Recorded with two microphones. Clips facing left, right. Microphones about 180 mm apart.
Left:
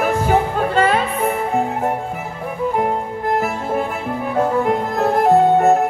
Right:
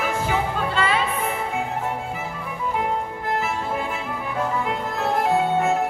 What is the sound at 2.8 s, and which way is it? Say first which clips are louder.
Music: left 5 dB; 45° left (ahead or behind).